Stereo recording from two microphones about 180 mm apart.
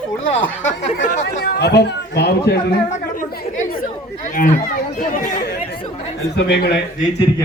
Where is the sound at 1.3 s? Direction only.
65° left (ahead or behind).